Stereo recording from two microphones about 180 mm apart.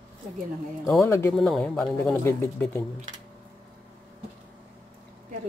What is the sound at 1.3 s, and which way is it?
Speech, centre (ahead or behind).